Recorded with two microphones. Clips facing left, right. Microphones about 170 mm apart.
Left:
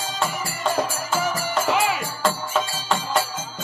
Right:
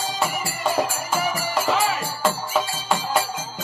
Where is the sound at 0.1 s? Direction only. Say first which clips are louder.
Right 1 dB; 10° right (ahead or behind).